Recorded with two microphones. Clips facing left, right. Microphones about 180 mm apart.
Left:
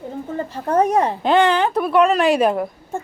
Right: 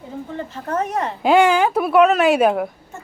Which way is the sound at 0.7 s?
35° left (ahead or behind).